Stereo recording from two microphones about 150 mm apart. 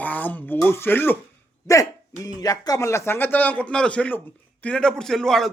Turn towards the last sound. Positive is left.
turn(degrees=0)  # may be behind; listen again after turning